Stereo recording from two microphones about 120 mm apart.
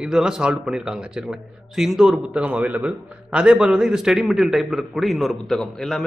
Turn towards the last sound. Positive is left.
turn(degrees=0)  # may be behind; listen again after turning